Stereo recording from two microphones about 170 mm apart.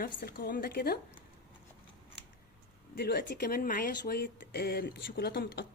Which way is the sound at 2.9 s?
65° left (ahead or behind).